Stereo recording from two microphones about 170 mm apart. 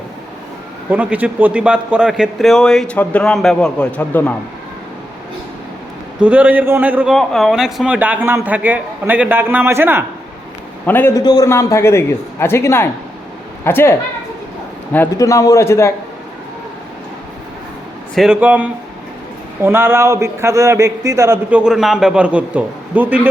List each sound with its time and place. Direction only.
0.9 s a man's voice: 10° right (ahead or behind); by 4.4 s 10° left (ahead or behind)
6.1 s a man's voice: 10° right (ahead or behind)
10.8 s a man's voice: 10° left (ahead or behind)
11.2 s a man's voice: 25° left (ahead or behind)
14.9 s a man's voice: 15° left (ahead or behind)
18.1 s a man's voice: 5° right (ahead or behind)
21.6 s a man's voice: 5° right (ahead or behind)